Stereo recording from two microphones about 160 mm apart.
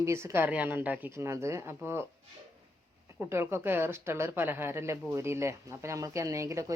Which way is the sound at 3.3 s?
15° right (ahead or behind).